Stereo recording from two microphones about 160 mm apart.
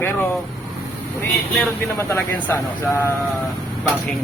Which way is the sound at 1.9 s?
15° left (ahead or behind).